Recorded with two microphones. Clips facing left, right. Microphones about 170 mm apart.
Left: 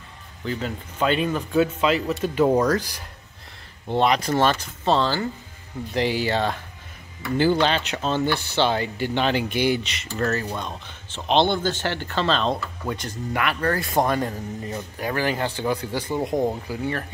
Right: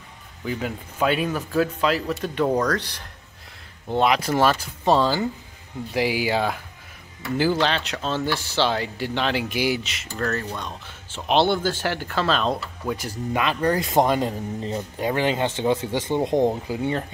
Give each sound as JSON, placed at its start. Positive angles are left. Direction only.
{"t": 0.5, "sound": "speech", "side_deg": -10}
{"t": 3.9, "sound": "speech", "side_deg": 0}
{"t": 11.1, "sound": "speech", "side_deg": -10}
{"t": 13.3, "sound": "speech", "side_deg": -20}